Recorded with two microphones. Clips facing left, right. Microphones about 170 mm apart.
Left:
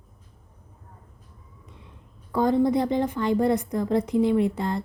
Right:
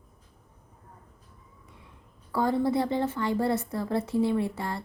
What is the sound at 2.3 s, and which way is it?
A woman's voice, 20° left (ahead or behind).